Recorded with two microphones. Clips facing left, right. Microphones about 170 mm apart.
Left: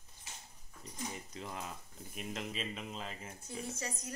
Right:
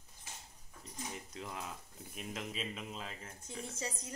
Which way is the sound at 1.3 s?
Centre (ahead or behind).